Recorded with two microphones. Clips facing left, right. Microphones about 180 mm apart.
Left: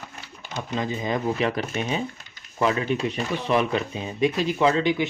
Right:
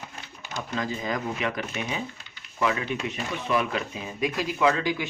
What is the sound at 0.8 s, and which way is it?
Speech, 20° left (ahead or behind).